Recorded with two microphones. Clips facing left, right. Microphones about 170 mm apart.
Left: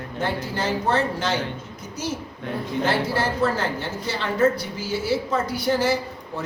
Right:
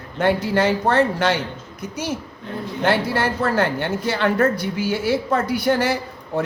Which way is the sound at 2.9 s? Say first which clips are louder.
Right 5 dB; 60° right (ahead or behind).